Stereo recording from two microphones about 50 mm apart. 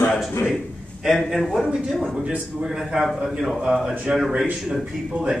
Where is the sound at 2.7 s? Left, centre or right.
Centre.